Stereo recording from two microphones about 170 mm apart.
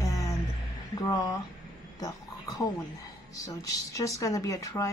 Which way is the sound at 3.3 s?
20° left (ahead or behind).